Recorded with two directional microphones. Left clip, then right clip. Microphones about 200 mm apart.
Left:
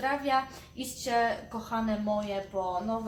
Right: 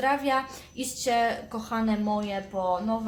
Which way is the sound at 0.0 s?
45° right (ahead or behind).